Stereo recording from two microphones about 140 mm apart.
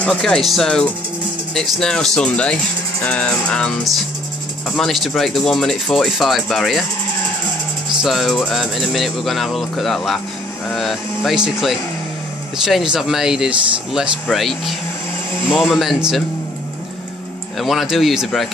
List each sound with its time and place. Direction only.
0.0 s speech: 5° left (ahead or behind)
8.0 s speech: centre (ahead or behind)
17.6 s speech: centre (ahead or behind)